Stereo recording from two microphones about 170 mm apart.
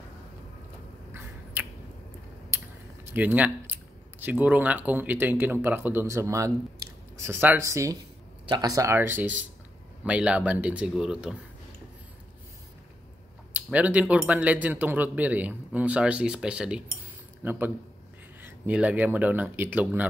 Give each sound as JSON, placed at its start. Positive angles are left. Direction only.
{"t": 1.1, "sound": "a sound", "side_deg": -15}
{"t": 3.1, "sound": "speech", "side_deg": -10}
{"t": 13.5, "sound": "a man's voice", "side_deg": -10}